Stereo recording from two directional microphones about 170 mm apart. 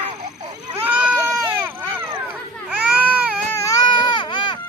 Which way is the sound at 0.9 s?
5° right (ahead or behind).